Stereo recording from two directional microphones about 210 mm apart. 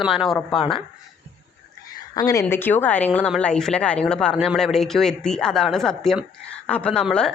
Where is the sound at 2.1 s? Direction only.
15° left (ahead or behind).